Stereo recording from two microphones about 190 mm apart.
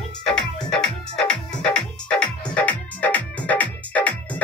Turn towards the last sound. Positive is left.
turn(degrees=5)  # may be behind; listen again after turning